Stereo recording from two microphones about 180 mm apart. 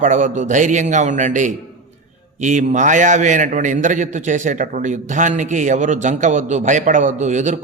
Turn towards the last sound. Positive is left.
turn(degrees=-40)  # may be behind; listen again after turning